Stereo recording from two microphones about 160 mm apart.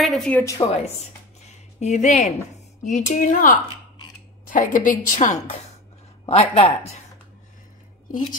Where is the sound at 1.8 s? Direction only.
50° left (ahead or behind).